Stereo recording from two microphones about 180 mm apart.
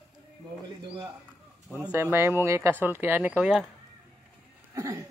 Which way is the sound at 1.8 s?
10° right (ahead or behind).